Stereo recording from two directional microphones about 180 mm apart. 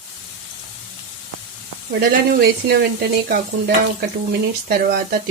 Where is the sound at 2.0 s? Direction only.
60° right (ahead or behind).